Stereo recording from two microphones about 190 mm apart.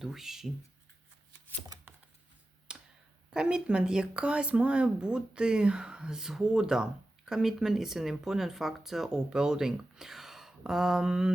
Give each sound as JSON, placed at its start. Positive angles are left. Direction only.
{"t": 0.0, "sound": "speech", "side_deg": 0}
{"t": 1.6, "sound": "shuffling cards", "side_deg": -20}
{"t": 2.7, "sound": "a sound", "side_deg": -5}
{"t": 3.2, "sound": "speech", "side_deg": -5}